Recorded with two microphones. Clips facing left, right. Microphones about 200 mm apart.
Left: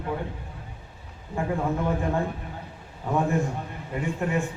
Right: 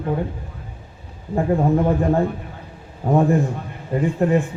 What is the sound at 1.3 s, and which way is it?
A man's voice, 35° right (ahead or behind).